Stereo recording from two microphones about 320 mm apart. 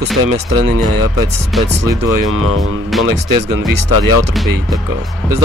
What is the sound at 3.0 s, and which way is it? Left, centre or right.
Speech, right.